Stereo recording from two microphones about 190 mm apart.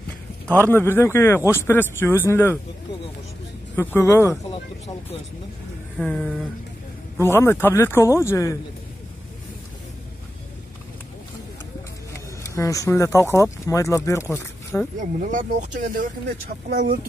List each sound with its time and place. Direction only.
0.5 s speech: 10° left (ahead or behind)
3.7 s speech: 10° left (ahead or behind)
5.9 s a sound: 5° left (ahead or behind)
7.2 s speech: 15° left (ahead or behind)
12.5 s speech: 15° left (ahead or behind)
15.0 s speech: 40° right (ahead or behind)